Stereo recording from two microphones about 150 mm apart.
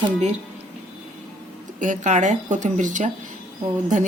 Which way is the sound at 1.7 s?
55° right (ahead or behind).